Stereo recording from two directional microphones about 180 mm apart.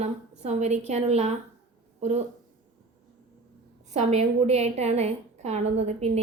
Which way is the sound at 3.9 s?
40° right (ahead or behind).